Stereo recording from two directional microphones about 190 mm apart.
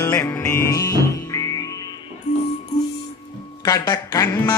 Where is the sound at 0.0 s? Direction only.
15° left (ahead or behind).